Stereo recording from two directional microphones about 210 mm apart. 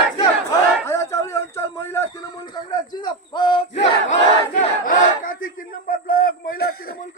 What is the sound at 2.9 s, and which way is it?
Battle cry, 20° left (ahead or behind).